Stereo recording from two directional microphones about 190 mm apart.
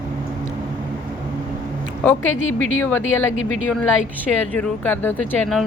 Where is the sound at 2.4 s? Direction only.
90° left.